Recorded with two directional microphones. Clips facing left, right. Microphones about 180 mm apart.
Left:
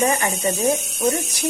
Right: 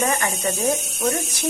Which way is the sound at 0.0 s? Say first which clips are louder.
Left 3 dB; 15° left (ahead or behind).